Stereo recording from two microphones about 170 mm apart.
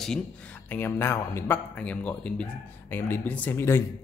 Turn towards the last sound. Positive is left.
turn(degrees=15)  # may be behind; listen again after turning